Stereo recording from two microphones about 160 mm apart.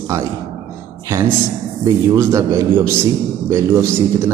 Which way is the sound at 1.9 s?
20° right (ahead or behind).